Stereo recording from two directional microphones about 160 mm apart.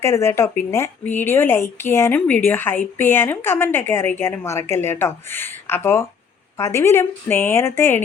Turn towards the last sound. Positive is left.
turn(degrees=15)  # may be behind; listen again after turning